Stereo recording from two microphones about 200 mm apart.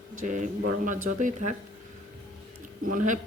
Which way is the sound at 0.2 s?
40° right (ahead or behind).